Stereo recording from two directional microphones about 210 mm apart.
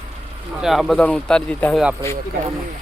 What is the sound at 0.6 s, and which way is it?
Speech, centre (ahead or behind).